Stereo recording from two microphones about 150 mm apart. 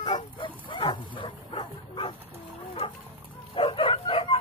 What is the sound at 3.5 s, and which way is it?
Bow-wow, 35° left (ahead or behind).